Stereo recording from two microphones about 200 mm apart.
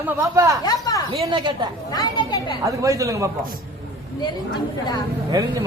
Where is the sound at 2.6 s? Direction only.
15° right (ahead or behind).